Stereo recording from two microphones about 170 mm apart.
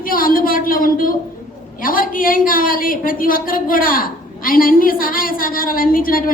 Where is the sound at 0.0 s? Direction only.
55° left (ahead or behind).